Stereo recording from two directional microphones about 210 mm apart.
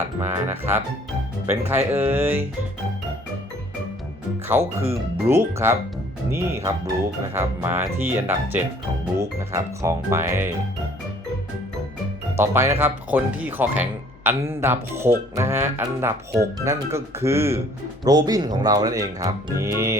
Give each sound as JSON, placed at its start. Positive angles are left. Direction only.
{"t": 0.2, "sound": "speech", "side_deg": -10}
{"t": 4.5, "sound": "speech", "side_deg": -10}
{"t": 12.4, "sound": "speech", "side_deg": -10}